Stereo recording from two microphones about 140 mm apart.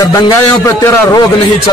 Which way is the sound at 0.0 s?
20° left (ahead or behind).